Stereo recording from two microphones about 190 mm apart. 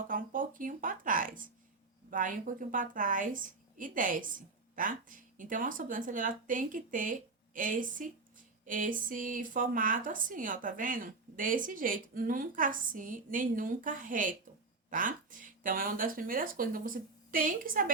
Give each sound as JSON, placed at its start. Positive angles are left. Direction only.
{"t": 0.1, "sound": "speech", "side_deg": -45}